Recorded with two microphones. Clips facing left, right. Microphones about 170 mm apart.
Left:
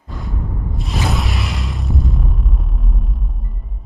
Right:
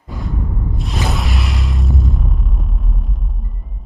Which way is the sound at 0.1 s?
Centre (ahead or behind).